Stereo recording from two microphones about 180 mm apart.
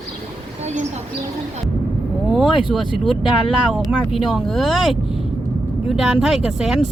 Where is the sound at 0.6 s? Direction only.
40° right (ahead or behind).